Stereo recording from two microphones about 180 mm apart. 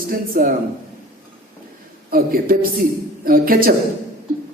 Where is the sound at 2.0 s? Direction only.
55° right (ahead or behind).